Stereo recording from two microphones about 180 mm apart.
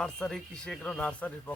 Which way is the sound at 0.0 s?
Centre (ahead or behind).